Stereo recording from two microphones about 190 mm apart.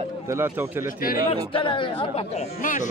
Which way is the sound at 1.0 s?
50° left (ahead or behind).